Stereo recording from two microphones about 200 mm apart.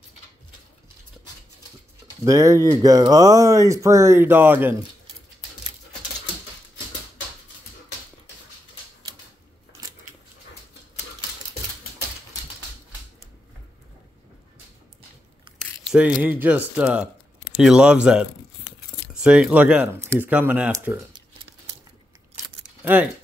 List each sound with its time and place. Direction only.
2.2 s speech: 15° right (ahead or behind)
15.9 s speech: 5° right (ahead or behind)